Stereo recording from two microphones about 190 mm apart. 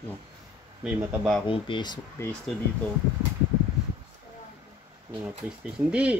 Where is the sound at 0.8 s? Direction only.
5° right (ahead or behind).